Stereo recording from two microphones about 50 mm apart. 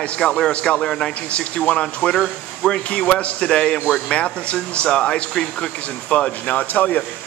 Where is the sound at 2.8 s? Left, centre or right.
Left.